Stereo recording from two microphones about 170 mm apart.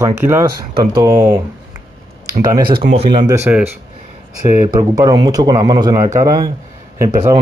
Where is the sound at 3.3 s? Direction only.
10° right (ahead or behind).